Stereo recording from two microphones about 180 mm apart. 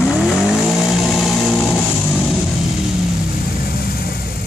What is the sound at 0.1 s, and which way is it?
Vehicle, 5° right (ahead or behind).